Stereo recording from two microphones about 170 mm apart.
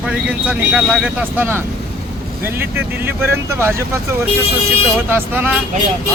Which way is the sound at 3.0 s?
15° right (ahead or behind).